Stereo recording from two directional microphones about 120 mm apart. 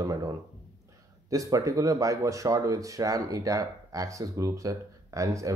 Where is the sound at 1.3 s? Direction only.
30° right (ahead or behind).